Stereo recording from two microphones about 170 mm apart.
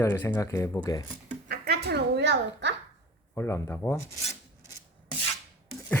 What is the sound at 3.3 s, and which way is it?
Speech, 15° left (ahead or behind).